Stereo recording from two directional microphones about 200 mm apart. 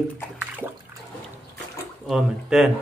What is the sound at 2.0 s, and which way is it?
Speech, centre (ahead or behind).